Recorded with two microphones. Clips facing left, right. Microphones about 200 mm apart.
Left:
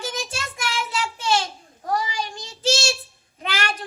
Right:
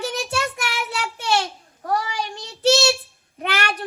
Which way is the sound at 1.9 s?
65° right (ahead or behind).